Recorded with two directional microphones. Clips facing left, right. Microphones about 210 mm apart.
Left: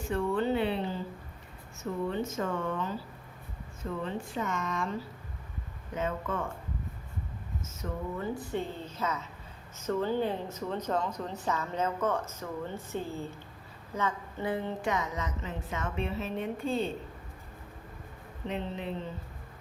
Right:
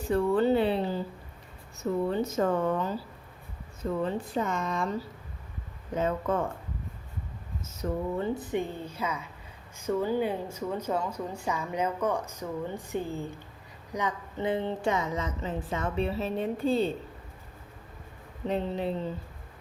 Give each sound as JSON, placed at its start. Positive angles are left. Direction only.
{"t": 0.1, "sound": "a sound", "side_deg": -35}
{"t": 1.8, "sound": "speech", "side_deg": -35}
{"t": 4.0, "sound": "speech", "side_deg": -35}
{"t": 7.8, "sound": "speech", "side_deg": -30}
{"t": 8.4, "sound": "a woman's voice", "side_deg": -15}
{"t": 18.4, "sound": "speech", "side_deg": -35}